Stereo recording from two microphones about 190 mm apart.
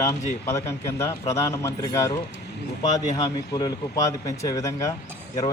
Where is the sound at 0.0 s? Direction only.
15° left (ahead or behind).